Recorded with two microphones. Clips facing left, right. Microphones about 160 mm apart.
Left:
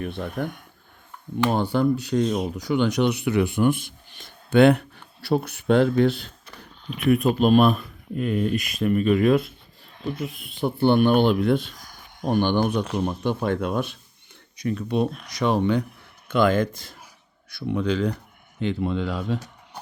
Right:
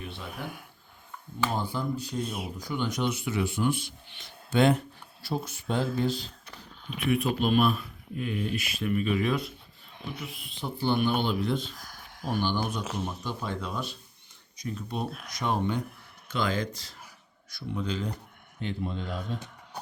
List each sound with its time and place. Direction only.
0.0 s speech: 55° left (ahead or behind)
1.5 s speech: 70° left (ahead or behind); by 9.4 s 50° left (ahead or behind)
10.2 s speech: centre (ahead or behind)
10.6 s speech: 60° left (ahead or behind)
11.8 s a sound: centre (ahead or behind)
12.3 s speech: 55° left (ahead or behind); by 15.8 s 90° left
16.3 s speech: 55° left (ahead or behind)
17.5 s speech: 70° left (ahead or behind)
18.6 s speech: 90° left